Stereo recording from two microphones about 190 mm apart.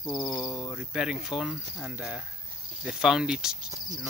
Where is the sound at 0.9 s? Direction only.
5° right (ahead or behind).